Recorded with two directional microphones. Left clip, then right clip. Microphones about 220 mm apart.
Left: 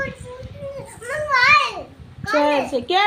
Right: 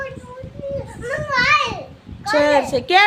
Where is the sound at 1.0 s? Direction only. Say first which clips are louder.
Left 2 dB; 5° right (ahead or behind).